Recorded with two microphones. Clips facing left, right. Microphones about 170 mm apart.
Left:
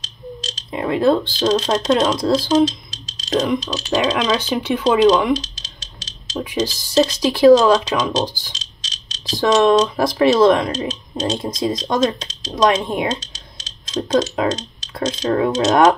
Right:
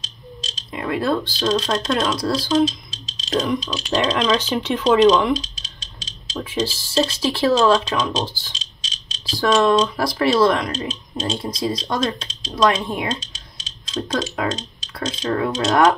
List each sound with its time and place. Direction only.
0.7 s speech: 25° left (ahead or behind)
3.9 s speech: 5° left (ahead or behind)
6.3 s speech: 15° left (ahead or behind)
14.1 s speech: 25° left (ahead or behind)